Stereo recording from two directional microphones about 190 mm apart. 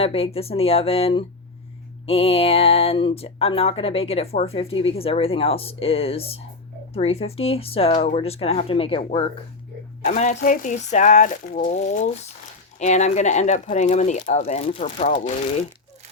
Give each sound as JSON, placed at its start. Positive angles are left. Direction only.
{"t": 0.0, "sound": "speech", "side_deg": 30}